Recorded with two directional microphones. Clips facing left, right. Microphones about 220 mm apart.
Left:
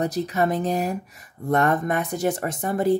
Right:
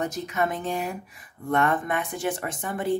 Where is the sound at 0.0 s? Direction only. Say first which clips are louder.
Left 4 dB; 35° left (ahead or behind).